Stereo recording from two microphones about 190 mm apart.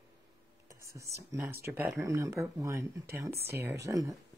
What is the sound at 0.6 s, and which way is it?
Speech, 15° right (ahead or behind).